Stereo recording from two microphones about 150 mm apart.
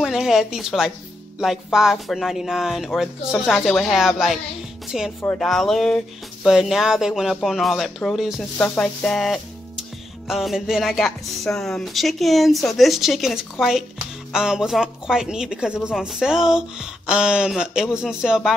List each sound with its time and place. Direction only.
0.0 s speech: 5° right (ahead or behind)
4.8 s music: 5° right (ahead or behind)
5.2 s speech: 5° left (ahead or behind)